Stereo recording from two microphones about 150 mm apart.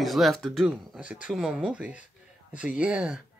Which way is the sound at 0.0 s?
Centre (ahead or behind).